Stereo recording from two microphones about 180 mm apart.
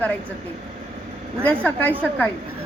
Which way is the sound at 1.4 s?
10° left (ahead or behind).